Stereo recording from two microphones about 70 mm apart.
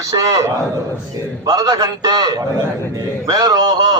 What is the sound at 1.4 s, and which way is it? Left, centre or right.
A man's voice, right.